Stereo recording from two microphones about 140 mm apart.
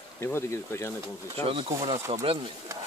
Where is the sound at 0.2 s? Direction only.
20° left (ahead or behind).